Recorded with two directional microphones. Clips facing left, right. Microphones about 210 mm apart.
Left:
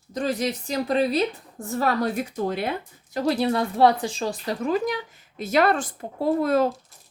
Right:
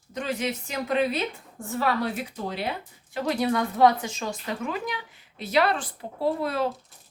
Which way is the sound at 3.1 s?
35° left (ahead or behind).